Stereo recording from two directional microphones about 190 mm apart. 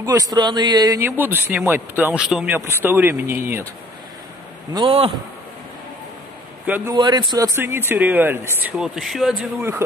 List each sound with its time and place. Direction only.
0.0 s a man's voice: 20° right (ahead or behind)
4.7 s speech: 25° right (ahead or behind)
6.6 s a man's voice: 10° right (ahead or behind)
7.0 s a man's voice: 25° right (ahead or behind); by 9.5 s centre (ahead or behind)
9.6 s a man's voice: 15° right (ahead or behind)